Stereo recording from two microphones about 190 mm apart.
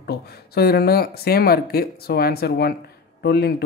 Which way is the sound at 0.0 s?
55° left (ahead or behind).